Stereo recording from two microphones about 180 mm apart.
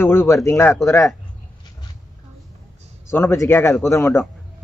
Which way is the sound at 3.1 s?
15° left (ahead or behind).